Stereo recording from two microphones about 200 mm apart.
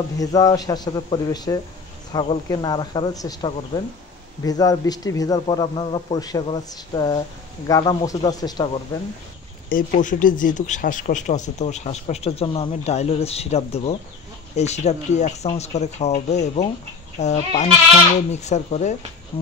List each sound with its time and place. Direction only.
0.2 s a man's voice: 20° left (ahead or behind)
9.7 s speech: 40° left (ahead or behind)
19.3 s insect: 30° left (ahead or behind)